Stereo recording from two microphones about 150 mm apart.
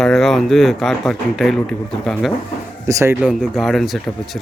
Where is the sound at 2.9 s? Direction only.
15° right (ahead or behind).